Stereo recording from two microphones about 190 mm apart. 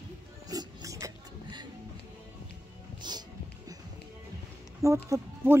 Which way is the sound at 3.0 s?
25° right (ahead or behind).